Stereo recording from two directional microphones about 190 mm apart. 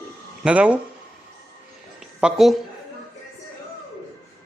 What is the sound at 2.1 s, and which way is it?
Speech, 5° right (ahead or behind).